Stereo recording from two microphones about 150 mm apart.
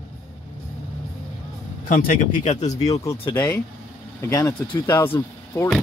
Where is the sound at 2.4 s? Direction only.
50° left (ahead or behind).